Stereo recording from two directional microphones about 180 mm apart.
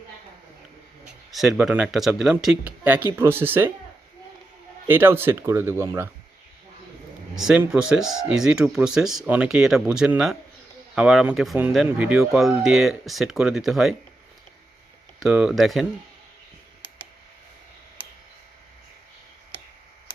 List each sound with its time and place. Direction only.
1.3 s speech: centre (ahead or behind)
4.9 s speech: 10° right (ahead or behind)
7.3 s speech: centre (ahead or behind)
15.2 s speech: 5° right (ahead or behind)